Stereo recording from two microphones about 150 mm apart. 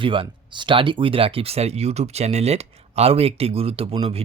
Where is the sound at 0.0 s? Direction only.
35° right (ahead or behind).